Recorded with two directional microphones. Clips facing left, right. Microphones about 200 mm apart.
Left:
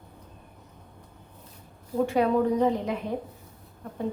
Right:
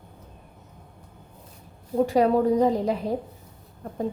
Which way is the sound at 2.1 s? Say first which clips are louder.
Right 3 dB; 35° right (ahead or behind).